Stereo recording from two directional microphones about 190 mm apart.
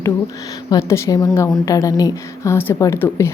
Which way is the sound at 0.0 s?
20° left (ahead or behind).